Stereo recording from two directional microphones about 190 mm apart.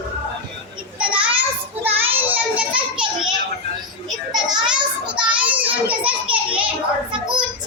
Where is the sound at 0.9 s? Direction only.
5° right (ahead or behind).